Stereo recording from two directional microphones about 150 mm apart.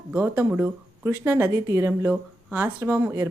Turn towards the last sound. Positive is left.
turn(degrees=-15)  # may be behind; listen again after turning